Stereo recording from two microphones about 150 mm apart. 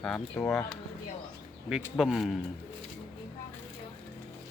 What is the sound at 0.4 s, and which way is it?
Speech, 5° left (ahead or behind).